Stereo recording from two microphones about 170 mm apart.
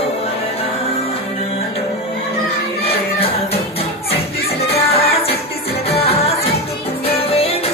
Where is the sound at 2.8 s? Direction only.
35° left (ahead or behind).